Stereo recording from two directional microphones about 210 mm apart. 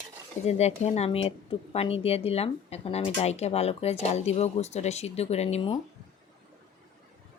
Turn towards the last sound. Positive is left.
turn(degrees=30)  # may be behind; listen again after turning